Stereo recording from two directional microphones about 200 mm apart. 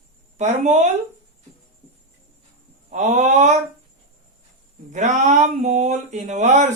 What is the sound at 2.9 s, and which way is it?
Speech, 35° right (ahead or behind).